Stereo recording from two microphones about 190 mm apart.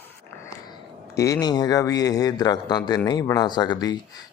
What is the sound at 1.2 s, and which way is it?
Speech, 15° left (ahead or behind).